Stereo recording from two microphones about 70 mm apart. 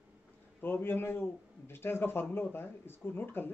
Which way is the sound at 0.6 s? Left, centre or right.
Left.